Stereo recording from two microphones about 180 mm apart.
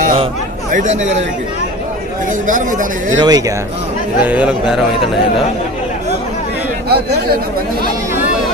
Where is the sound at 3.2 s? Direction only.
20° right (ahead or behind).